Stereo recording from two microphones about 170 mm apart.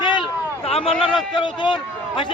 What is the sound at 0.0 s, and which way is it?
A man's voice, 30° left (ahead or behind).